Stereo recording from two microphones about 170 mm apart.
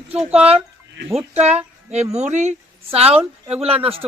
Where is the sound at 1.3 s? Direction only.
40° right (ahead or behind).